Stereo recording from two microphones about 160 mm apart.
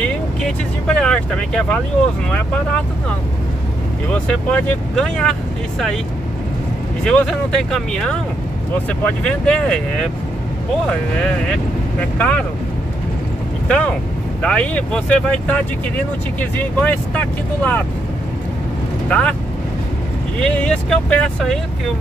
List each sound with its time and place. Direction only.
0.0 s vehicle: 5° left (ahead or behind)
2.3 s speech: 10° left (ahead or behind)
4.1 s speech: 5° left (ahead or behind)
7.1 s speech: 5° left (ahead or behind)
12.2 s speech: 5° left (ahead or behind)
13.7 s speech: 5° left (ahead or behind)
19.0 s speech: 10° left (ahead or behind)
20.3 s speech: 5° left (ahead or behind)